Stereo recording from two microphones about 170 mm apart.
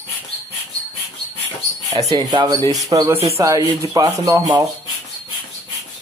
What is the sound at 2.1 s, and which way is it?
Speech, 25° right (ahead or behind).